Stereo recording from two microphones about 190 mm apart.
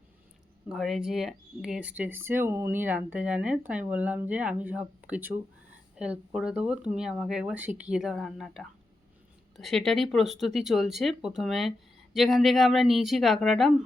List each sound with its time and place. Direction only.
0.7 s speech: centre (ahead or behind)